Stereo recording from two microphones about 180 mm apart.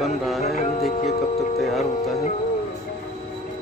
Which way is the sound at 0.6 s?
40° left (ahead or behind).